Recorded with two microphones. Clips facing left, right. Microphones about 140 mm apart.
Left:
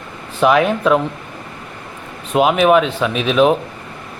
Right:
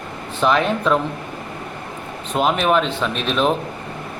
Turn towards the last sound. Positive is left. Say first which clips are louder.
# left 6 dB
turn(degrees=5)  # may be behind; listen again after turning